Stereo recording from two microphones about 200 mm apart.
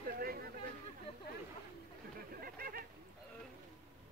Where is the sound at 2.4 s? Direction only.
45° right (ahead or behind).